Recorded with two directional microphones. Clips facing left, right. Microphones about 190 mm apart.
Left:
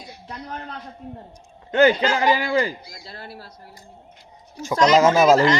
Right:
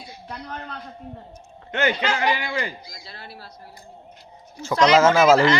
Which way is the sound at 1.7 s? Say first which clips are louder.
Left 6 dB; 35° left (ahead or behind).